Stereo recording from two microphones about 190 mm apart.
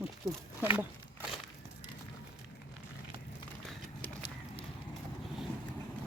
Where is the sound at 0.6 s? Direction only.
10° right (ahead or behind).